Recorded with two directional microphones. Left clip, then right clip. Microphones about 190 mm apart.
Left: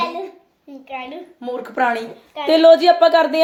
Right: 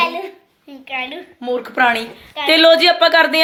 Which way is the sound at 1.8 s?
15° right (ahead or behind).